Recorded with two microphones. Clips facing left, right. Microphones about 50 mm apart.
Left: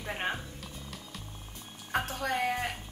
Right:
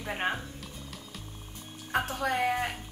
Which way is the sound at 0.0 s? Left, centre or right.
Centre.